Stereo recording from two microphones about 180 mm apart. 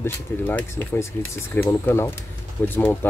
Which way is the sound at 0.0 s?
10° left (ahead or behind).